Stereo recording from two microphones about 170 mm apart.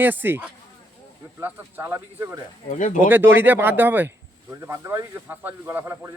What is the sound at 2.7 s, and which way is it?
Speech, 45° left (ahead or behind).